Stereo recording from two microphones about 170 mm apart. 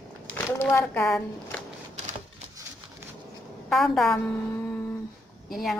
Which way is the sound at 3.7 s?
Centre (ahead or behind).